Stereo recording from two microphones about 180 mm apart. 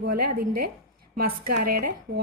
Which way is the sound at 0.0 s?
55° right (ahead or behind).